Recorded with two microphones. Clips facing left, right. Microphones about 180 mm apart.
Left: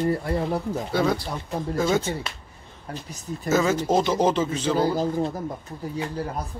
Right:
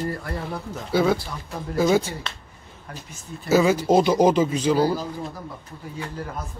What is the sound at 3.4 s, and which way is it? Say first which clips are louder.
Speech: right 3 dB; 10° right (ahead or behind).